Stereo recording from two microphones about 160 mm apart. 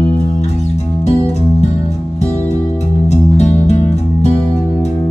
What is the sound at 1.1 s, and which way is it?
Music, 40° left (ahead or behind).